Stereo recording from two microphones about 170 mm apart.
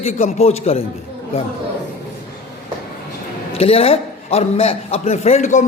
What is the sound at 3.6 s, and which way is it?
A man's voice, 35° left (ahead or behind).